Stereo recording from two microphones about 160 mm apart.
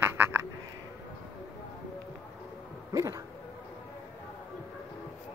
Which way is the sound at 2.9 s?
20° right (ahead or behind).